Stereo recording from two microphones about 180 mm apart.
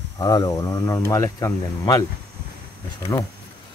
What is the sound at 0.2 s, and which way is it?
Speech, 20° left (ahead or behind).